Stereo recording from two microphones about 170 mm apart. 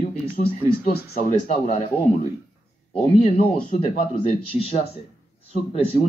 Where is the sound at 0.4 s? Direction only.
40° left (ahead or behind).